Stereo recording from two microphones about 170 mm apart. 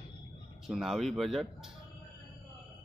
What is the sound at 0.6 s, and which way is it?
Speech, centre (ahead or behind).